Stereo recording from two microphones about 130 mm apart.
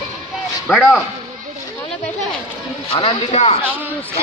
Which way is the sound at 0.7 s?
Centre (ahead or behind).